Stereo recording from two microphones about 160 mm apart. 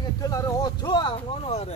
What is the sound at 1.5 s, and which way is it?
Speech, 40° left (ahead or behind).